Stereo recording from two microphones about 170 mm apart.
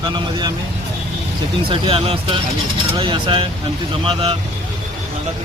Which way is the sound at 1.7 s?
35° right (ahead or behind).